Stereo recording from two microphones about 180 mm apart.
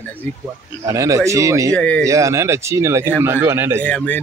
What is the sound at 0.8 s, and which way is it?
Speech, 15° right (ahead or behind).